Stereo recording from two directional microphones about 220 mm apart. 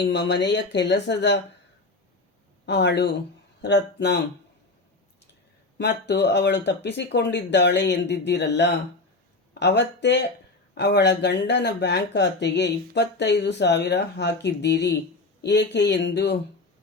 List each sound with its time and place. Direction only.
0.0 s speech: 55° left (ahead or behind)
2.6 s speech: 50° left (ahead or behind)
5.7 s speech: 50° left (ahead or behind)